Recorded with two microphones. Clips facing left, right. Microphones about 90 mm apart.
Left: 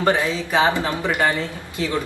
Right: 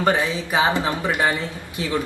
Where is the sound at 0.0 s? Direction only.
20° right (ahead or behind).